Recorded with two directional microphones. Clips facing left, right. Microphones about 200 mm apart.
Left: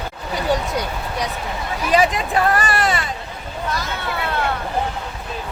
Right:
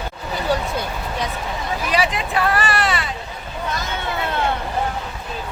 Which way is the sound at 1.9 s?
45° left (ahead or behind).